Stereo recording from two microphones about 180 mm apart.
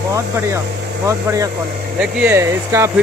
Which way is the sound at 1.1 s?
15° right (ahead or behind).